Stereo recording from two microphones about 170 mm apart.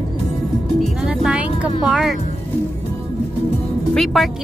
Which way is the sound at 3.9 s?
Centre (ahead or behind).